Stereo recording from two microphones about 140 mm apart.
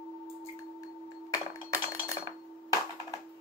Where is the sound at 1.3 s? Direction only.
20° left (ahead or behind).